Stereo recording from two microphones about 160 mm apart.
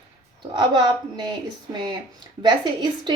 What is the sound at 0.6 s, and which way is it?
Speech, 25° right (ahead or behind).